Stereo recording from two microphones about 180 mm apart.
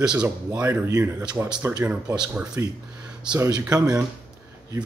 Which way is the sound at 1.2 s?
5° right (ahead or behind).